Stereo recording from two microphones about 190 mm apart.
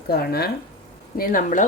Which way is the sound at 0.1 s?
55° left (ahead or behind).